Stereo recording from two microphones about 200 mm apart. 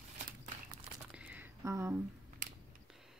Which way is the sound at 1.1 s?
10° right (ahead or behind).